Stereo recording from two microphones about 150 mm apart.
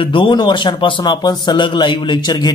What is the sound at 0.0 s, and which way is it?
A man's voice, 35° left (ahead or behind).